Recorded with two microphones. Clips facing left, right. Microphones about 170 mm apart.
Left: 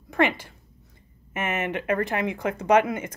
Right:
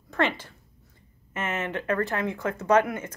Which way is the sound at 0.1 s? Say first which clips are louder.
Left 3 dB; 10° left (ahead or behind).